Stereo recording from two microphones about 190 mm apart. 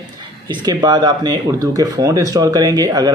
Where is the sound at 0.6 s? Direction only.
20° right (ahead or behind).